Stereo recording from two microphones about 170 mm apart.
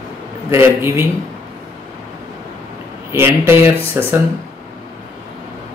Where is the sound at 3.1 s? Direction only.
15° right (ahead or behind).